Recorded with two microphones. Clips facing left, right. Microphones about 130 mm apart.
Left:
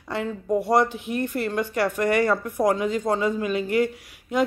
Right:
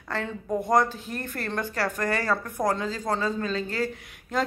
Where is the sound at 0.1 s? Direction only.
5° left (ahead or behind).